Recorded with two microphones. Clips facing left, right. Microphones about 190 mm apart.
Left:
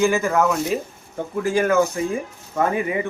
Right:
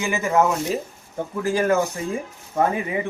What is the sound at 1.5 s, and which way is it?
Speech, 35° right (ahead or behind).